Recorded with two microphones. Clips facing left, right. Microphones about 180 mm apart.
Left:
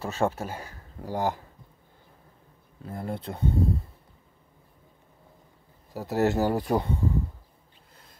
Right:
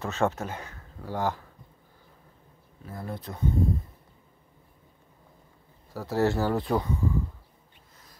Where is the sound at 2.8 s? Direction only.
25° left (ahead or behind).